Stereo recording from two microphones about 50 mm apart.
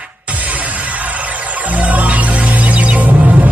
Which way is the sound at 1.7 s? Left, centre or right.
Right.